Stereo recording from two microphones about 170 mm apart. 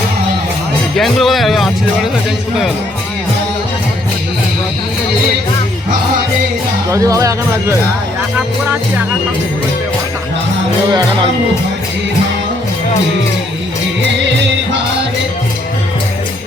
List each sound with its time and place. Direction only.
0.9 s speech: centre (ahead or behind)
6.9 s speech: 20° right (ahead or behind)